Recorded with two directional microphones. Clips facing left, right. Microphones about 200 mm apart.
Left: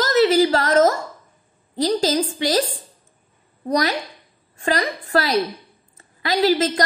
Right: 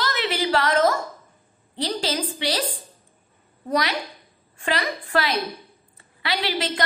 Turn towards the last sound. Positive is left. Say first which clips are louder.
# left 8 dB
turn(degrees=40)  # may be behind; listen again after turning